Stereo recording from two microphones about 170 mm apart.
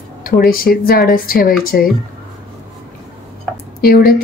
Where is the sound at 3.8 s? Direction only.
60° left (ahead or behind).